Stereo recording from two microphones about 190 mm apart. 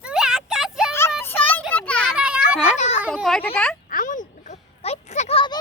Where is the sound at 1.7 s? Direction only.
5° left (ahead or behind).